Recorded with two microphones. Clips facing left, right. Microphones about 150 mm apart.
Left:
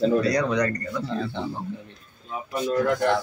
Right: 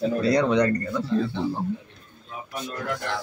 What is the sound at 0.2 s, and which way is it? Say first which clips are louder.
Speech: right 2 dB; 30° right (ahead or behind).